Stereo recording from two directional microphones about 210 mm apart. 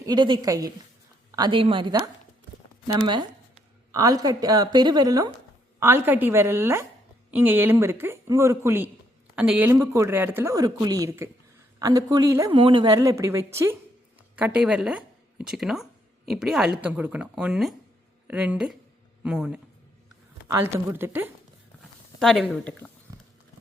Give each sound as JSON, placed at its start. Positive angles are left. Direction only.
{"t": 0.0, "sound": "speech", "side_deg": -20}
{"t": 3.9, "sound": "speech", "side_deg": -15}
{"t": 22.2, "sound": "speech", "side_deg": 0}